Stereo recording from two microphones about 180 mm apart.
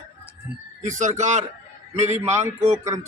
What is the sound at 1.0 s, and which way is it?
A man's voice, 40° right (ahead or behind).